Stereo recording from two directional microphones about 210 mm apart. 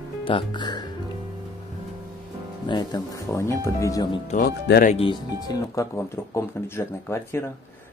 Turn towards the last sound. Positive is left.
turn(degrees=10)  # may be behind; listen again after turning